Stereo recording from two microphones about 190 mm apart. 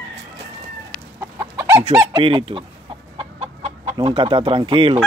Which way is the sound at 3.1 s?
30° right (ahead or behind).